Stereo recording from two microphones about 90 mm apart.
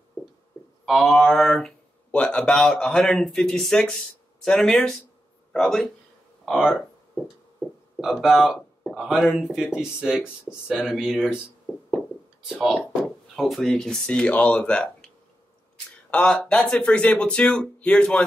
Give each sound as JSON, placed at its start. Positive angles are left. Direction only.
{"t": 0.8, "sound": "speech", "side_deg": 0}
{"t": 8.0, "sound": "speech", "side_deg": -5}
{"t": 11.7, "sound": "music", "side_deg": 30}
{"t": 12.4, "sound": "speech", "side_deg": -10}
{"t": 16.1, "sound": "speech", "side_deg": 15}